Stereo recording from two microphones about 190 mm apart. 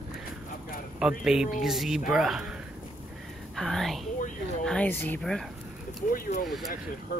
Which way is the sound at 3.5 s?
Centre (ahead or behind).